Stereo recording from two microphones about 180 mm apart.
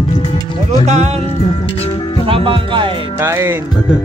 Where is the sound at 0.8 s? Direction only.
40° right (ahead or behind).